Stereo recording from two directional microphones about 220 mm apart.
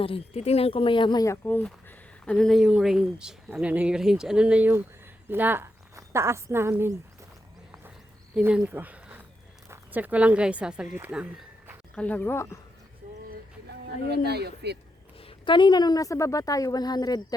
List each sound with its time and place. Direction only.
0.0 s speech: 25° left (ahead or behind); by 6.9 s 10° right (ahead or behind)
8.4 s speech: 5° right (ahead or behind)
11.9 s a woman's voice: 5° left (ahead or behind)
13.3 s a sound: 50° right (ahead or behind)
15.2 s a woman's voice: 25° left (ahead or behind)